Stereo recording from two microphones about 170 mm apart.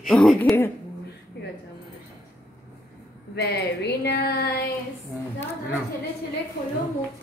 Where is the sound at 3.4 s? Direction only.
75° left (ahead or behind).